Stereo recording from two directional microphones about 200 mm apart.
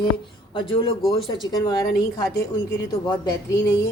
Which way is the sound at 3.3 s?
20° left (ahead or behind).